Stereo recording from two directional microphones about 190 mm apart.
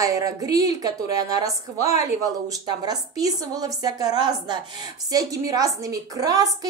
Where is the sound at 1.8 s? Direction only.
15° right (ahead or behind).